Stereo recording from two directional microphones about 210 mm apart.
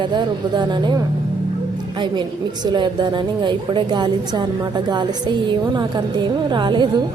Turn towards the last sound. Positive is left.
turn(degrees=-20)  # may be behind; listen again after turning